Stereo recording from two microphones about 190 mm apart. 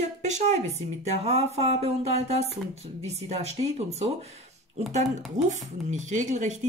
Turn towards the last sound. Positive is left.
turn(degrees=-40)  # may be behind; listen again after turning